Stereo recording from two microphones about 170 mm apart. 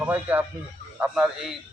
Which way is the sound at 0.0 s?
10° right (ahead or behind).